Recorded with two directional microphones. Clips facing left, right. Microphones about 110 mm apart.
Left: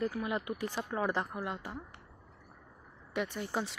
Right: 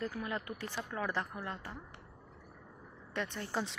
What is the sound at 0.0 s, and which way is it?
Speech, 10° left (ahead or behind).